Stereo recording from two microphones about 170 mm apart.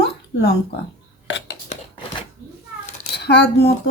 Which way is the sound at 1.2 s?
90° left.